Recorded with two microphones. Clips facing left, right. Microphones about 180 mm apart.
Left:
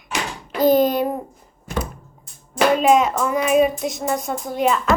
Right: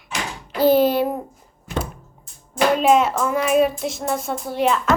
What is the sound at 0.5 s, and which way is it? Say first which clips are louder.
Speech: even; 10° right (ahead or behind).